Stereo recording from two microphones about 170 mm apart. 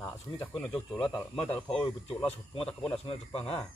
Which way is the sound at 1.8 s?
25° left (ahead or behind).